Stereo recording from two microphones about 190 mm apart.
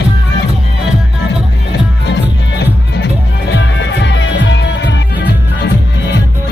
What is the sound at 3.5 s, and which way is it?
Music, 70° left (ahead or behind).